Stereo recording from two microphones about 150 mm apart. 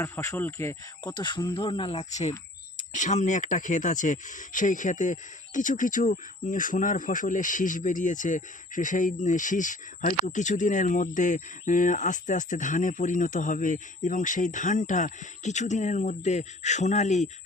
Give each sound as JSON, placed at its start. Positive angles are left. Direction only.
{"t": 0.0, "sound": "speech", "side_deg": 20}
{"t": 1.1, "sound": "speech", "side_deg": 30}